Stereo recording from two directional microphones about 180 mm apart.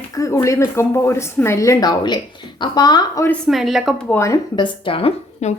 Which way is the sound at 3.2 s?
Centre (ahead or behind).